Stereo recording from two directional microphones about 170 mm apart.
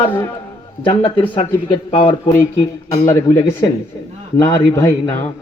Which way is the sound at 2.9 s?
15° left (ahead or behind).